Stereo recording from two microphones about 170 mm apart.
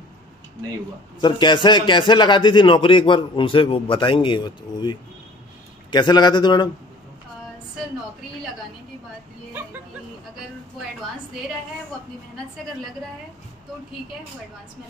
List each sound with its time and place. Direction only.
1.2 s a man's voice: 30° left (ahead or behind)
9.5 s music: 10° right (ahead or behind)